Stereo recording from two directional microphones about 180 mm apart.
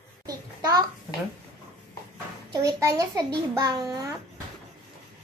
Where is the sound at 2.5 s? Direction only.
20° right (ahead or behind).